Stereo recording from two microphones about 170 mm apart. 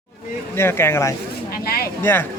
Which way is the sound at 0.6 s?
15° left (ahead or behind).